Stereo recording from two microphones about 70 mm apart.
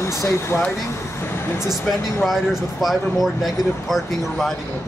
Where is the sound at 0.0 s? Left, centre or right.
Left.